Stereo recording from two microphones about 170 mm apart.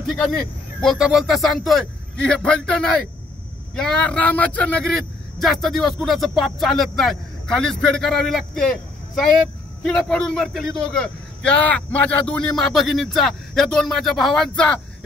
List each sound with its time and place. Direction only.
0.0 s speech: 5° left (ahead or behind)